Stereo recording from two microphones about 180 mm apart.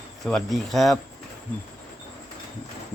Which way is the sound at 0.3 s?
Centre (ahead or behind).